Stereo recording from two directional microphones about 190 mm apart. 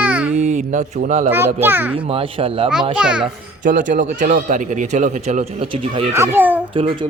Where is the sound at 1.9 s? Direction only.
30° right (ahead or behind).